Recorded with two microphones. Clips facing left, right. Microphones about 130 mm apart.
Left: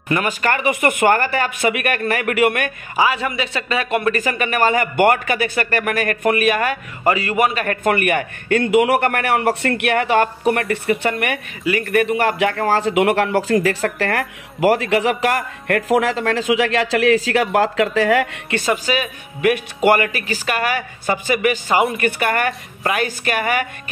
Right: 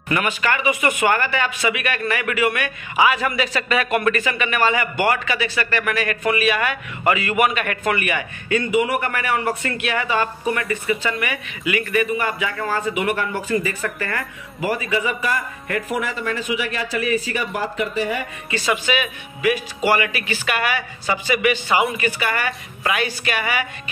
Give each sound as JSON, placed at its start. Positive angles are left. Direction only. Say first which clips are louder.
{"t": 0.1, "sound": "a man's voice", "louder": "left 2 dB", "side_deg": 40}
{"t": 3.0, "sound": "speech", "louder": "even", "side_deg": 30}
{"t": 4.2, "sound": "a man's voice", "louder": "left 2 dB", "side_deg": 40}
{"t": 12.1, "sound": "speech", "louder": "left 6 dB", "side_deg": 70}
{"t": 18.6, "sound": "speech", "louder": "left 1 dB", "side_deg": 40}
{"t": 19.4, "sound": "a man's voice", "louder": "left 4 dB", "side_deg": 55}
{"t": 21.9, "sound": "a man's voice", "louder": "left 4 dB", "side_deg": 55}